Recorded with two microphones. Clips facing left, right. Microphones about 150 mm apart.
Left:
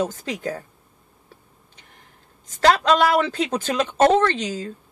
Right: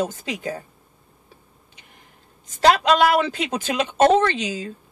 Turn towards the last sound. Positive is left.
turn(degrees=-15)  # may be behind; listen again after turning